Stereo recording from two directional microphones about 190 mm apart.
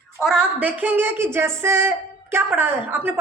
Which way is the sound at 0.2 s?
5° right (ahead or behind).